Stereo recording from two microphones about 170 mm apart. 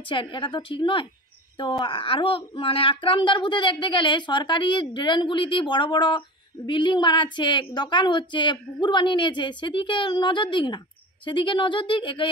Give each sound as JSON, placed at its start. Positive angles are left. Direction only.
{"t": 0.1, "sound": "a woman's voice", "side_deg": 30}